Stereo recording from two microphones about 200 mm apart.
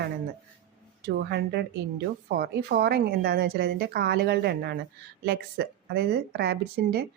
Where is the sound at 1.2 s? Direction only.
55° right (ahead or behind).